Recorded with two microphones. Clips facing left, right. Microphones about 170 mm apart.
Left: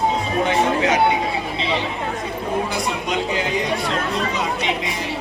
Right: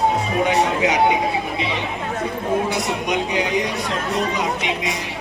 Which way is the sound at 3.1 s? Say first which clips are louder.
Right 2 dB; 20° right (ahead or behind).